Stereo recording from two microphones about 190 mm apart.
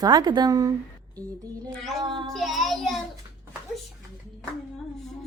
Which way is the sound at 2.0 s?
25° right (ahead or behind).